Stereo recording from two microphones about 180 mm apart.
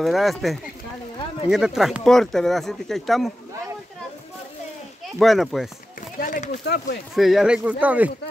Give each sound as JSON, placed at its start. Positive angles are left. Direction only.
{"t": 0.0, "sound": "speech", "side_deg": 0}
{"t": 5.2, "sound": "speech", "side_deg": 0}
{"t": 6.1, "sound": "a sound", "side_deg": 45}
{"t": 7.2, "sound": "speech", "side_deg": 0}